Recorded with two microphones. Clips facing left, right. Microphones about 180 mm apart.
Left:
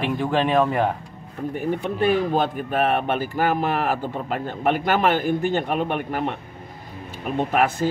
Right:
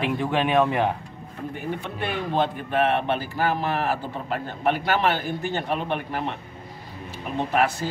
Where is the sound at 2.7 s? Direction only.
40° left (ahead or behind).